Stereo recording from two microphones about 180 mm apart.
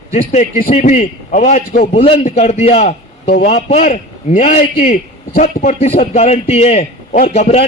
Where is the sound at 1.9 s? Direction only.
35° left (ahead or behind).